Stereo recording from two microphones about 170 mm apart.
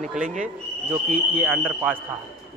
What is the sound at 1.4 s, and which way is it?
Speech, 5° right (ahead or behind).